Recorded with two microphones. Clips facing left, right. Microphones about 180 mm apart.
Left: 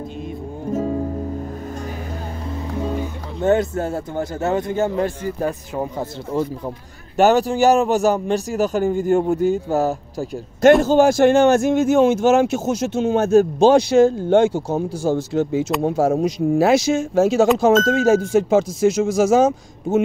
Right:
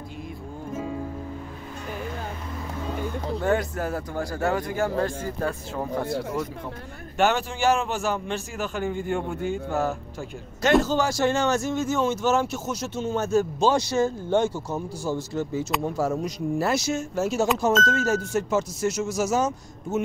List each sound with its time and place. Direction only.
0.7 s music: 40° left (ahead or behind)
3.4 s a man's voice: 25° left (ahead or behind)
7.2 s a man's voice: 40° left (ahead or behind)
10.8 s speech: 55° left (ahead or behind); by 14.6 s 70° left (ahead or behind)
15.0 s speech: 85° left